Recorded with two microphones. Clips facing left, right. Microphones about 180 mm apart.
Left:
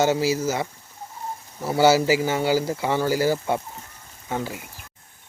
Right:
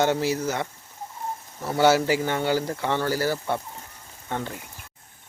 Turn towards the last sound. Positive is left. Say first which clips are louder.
# left 2 dB
turn(degrees=5)  # may be behind; listen again after turning